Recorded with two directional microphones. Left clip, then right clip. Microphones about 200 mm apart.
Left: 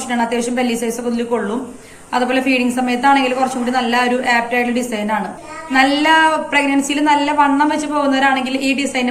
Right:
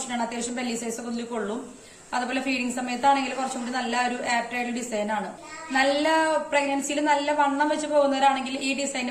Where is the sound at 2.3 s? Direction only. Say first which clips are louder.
Left 11 dB; 50° right (ahead or behind).